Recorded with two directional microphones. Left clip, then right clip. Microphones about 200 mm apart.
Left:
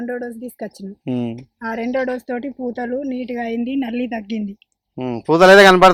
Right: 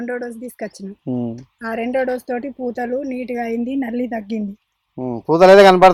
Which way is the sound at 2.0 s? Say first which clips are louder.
Right 2 dB; 30° right (ahead or behind).